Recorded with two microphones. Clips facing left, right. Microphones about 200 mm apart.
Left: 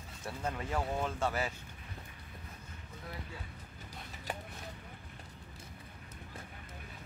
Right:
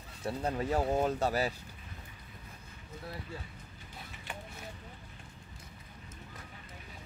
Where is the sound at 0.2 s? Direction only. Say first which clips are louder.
Right 5 dB; 35° right (ahead or behind).